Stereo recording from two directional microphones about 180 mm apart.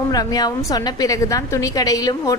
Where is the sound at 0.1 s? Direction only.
20° left (ahead or behind).